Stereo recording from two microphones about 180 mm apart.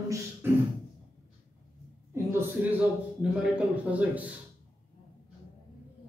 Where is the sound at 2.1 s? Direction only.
15° right (ahead or behind).